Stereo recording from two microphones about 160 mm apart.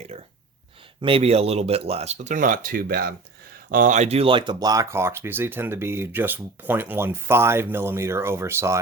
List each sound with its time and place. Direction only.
0.1 s speech: 40° right (ahead or behind); by 3.2 s 70° right (ahead or behind)
3.7 s speech: 55° right (ahead or behind); by 8.8 s 15° right (ahead or behind)